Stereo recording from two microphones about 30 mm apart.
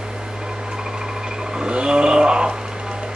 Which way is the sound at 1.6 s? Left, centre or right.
Right.